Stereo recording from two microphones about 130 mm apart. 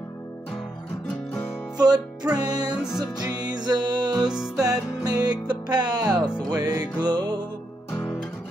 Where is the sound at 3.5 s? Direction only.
35° right (ahead or behind).